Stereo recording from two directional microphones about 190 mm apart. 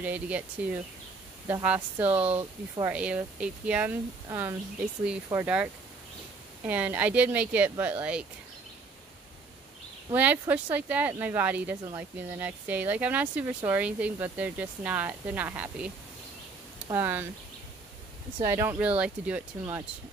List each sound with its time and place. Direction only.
0.0 s speech: 5° right (ahead or behind)
2.1 s speech: 30° right (ahead or behind)
2.8 s speech: 5° right (ahead or behind)
10.1 s speech: 10° right (ahead or behind)
18.4 s speech: 15° right (ahead or behind)